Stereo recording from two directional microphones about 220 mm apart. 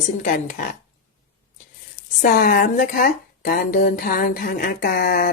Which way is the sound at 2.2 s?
40° left (ahead or behind).